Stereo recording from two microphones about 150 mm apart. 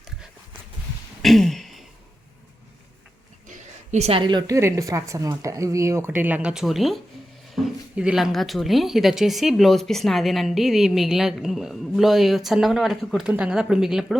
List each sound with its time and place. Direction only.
1.2 s a sound: centre (ahead or behind)
3.9 s a woman's voice: 45° right (ahead or behind)
4.2 s speech: 30° right (ahead or behind); by 14.2 s 5° right (ahead or behind)